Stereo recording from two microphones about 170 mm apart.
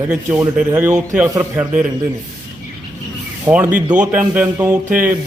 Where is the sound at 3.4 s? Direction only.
10° right (ahead or behind).